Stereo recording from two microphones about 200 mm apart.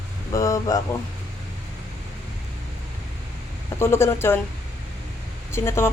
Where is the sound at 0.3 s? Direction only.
15° left (ahead or behind).